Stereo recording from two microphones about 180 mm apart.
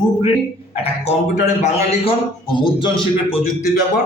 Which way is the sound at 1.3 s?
40° left (ahead or behind).